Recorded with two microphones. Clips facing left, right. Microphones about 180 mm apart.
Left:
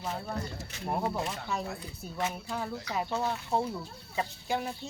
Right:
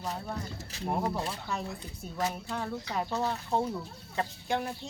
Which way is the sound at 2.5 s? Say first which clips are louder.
Even; 5° left (ahead or behind).